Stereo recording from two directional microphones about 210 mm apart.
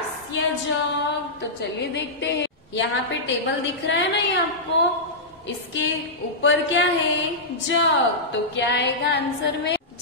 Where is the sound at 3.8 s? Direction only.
60° left (ahead or behind).